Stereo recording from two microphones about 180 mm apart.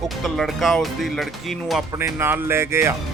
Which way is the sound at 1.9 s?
15° right (ahead or behind).